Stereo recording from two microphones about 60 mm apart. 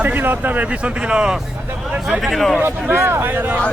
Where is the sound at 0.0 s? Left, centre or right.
Right; by 1.4 s centre.